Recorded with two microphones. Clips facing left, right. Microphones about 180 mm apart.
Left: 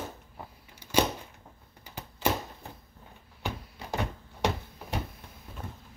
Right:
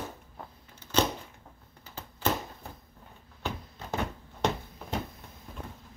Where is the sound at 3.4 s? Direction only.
15° left (ahead or behind).